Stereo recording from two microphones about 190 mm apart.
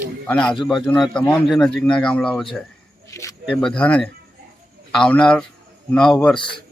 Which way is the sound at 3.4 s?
5° left (ahead or behind).